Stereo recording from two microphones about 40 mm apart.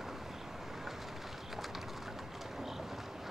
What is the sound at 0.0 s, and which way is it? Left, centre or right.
Bird, centre.